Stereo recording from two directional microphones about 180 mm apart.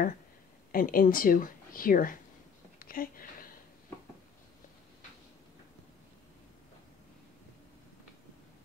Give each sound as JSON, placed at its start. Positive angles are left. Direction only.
{"t": 0.7, "sound": "speech", "side_deg": 50}